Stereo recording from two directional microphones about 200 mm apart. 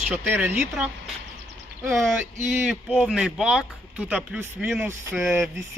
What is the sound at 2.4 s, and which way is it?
A man's voice, 5° right (ahead or behind).